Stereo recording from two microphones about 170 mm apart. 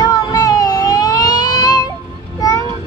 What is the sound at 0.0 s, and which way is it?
Music, 20° left (ahead or behind).